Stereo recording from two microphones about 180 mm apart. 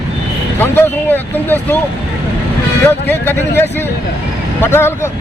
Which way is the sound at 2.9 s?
10° left (ahead or behind).